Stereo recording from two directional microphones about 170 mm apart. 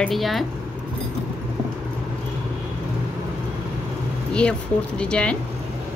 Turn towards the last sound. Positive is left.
turn(degrees=5)  # may be behind; listen again after turning